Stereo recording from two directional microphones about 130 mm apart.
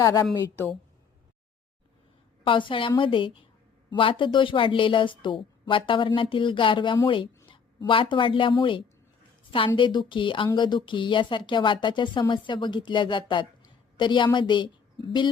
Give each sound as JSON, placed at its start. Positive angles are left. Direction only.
{"t": 0.0, "sound": "a woman's voice", "side_deg": 30}
{"t": 2.4, "sound": "a woman's voice", "side_deg": 40}